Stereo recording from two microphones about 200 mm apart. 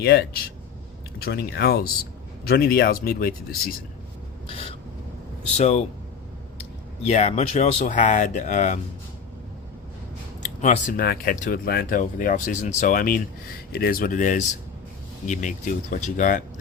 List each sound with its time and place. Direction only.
0.0 s speech: 55° left (ahead or behind)
4.4 s a sound: 30° left (ahead or behind)
5.5 s speech: 35° left (ahead or behind)
7.0 s speech: 35° left (ahead or behind)
10.6 s speech: 40° left (ahead or behind)